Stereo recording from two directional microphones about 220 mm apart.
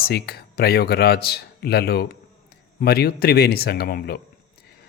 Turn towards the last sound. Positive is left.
turn(degrees=45)  # may be behind; listen again after turning